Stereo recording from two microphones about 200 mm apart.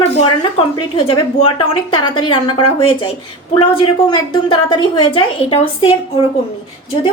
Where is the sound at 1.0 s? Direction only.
25° left (ahead or behind).